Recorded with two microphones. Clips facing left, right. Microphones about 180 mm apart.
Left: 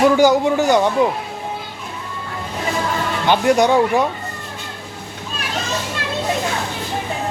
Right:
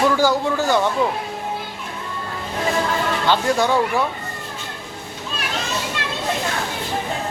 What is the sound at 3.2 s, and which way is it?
Speech, 15° left (ahead or behind).